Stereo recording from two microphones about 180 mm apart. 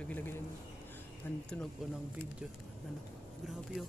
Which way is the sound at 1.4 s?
5° left (ahead or behind).